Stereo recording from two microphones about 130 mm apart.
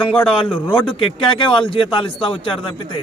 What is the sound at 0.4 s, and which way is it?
A man's voice, 40° left (ahead or behind).